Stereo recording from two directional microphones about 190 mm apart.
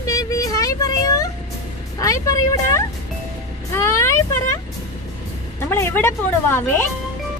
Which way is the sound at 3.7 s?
15° left (ahead or behind).